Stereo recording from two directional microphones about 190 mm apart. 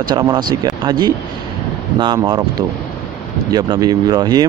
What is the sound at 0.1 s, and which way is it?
Speech, 20° right (ahead or behind).